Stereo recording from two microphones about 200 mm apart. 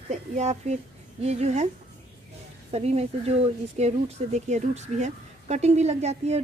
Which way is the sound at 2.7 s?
30° right (ahead or behind).